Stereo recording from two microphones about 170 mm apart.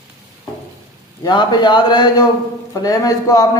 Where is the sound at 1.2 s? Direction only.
25° left (ahead or behind).